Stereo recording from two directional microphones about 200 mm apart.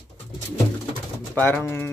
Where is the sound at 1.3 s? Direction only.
10° left (ahead or behind).